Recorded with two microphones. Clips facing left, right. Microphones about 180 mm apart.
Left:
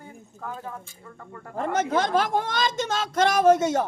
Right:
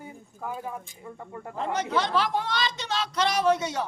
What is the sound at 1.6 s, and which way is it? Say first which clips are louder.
Speech: left 3 dB; 50° left (ahead or behind).